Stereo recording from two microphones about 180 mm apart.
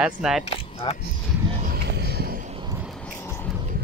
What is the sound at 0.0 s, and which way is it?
Speech, 5° right (ahead or behind).